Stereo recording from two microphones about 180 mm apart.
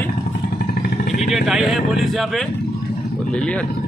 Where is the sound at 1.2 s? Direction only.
Centre (ahead or behind).